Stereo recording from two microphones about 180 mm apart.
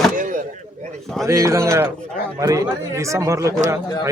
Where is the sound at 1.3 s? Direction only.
15° right (ahead or behind).